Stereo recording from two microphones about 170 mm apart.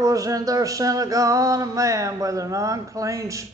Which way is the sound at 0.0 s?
20° right (ahead or behind).